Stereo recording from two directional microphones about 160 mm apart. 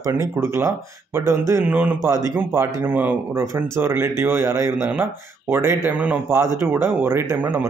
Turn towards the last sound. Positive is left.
turn(degrees=-15)  # may be behind; listen again after turning